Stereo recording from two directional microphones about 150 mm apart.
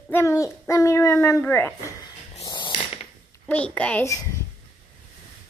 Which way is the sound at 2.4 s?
30° left (ahead or behind).